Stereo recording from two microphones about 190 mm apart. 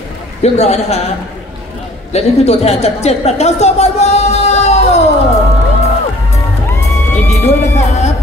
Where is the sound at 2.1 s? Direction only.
35° left (ahead or behind).